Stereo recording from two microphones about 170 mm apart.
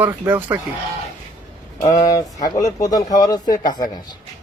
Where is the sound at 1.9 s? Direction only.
20° left (ahead or behind).